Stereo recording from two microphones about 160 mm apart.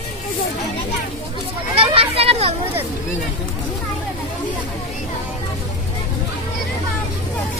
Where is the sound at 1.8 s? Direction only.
35° right (ahead or behind).